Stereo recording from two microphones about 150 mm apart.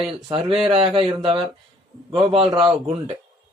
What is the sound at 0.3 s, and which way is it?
Speech, 35° right (ahead or behind).